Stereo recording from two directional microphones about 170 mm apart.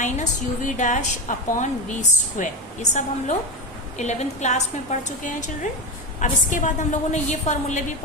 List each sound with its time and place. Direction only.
0.0 s a woman's voice: 45° left (ahead or behind)